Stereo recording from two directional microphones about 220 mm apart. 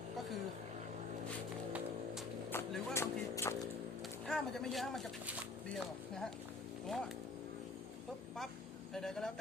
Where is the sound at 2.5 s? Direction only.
Centre (ahead or behind).